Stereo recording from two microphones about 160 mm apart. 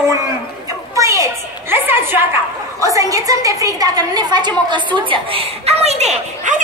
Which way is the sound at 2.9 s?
20° right (ahead or behind).